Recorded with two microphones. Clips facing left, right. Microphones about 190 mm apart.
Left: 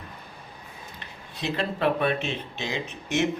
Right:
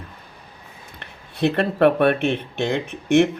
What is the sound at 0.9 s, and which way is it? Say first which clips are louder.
Speech: right 14 dB; 60° right (ahead or behind).